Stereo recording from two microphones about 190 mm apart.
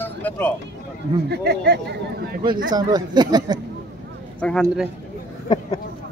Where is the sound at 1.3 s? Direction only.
60° right (ahead or behind).